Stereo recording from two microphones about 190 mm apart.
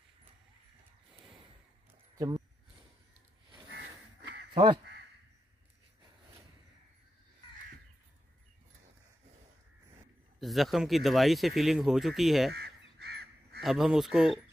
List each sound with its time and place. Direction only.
2.1 s a sound: 20° right (ahead or behind)
10.4 s speech: centre (ahead or behind)
13.0 s crow: 55° right (ahead or behind)
13.6 s speech: centre (ahead or behind)